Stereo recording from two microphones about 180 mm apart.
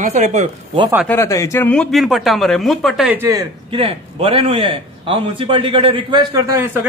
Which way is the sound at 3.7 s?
30° right (ahead or behind).